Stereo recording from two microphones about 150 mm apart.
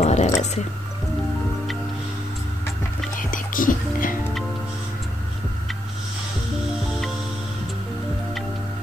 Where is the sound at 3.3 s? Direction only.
65° left (ahead or behind).